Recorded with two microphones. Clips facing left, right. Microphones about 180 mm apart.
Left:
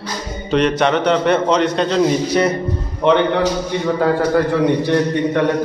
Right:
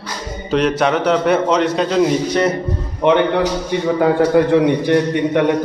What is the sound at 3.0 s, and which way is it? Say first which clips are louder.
A man's voice: even; 15° right (ahead or behind).